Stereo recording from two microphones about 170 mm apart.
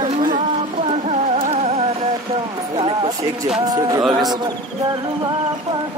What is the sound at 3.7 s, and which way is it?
Speech, 20° right (ahead or behind).